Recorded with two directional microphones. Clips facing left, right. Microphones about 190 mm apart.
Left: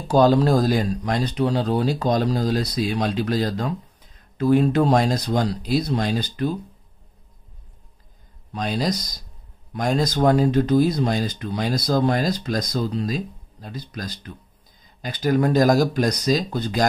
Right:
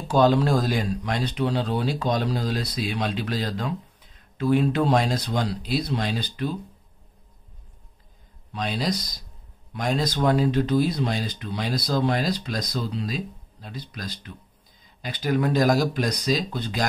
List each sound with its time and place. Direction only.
0.1 s speech: 40° left (ahead or behind)
8.5 s speech: 45° left (ahead or behind)